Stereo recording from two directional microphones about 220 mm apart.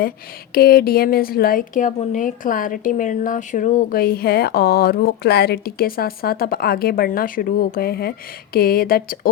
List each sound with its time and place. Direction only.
0.5 s a woman's voice: 45° left (ahead or behind)